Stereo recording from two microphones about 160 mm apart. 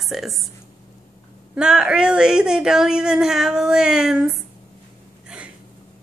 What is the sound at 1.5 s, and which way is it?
A woman's voice, 5° right (ahead or behind).